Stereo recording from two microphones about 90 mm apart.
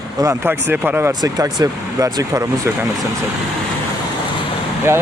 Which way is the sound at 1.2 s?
40° right (ahead or behind).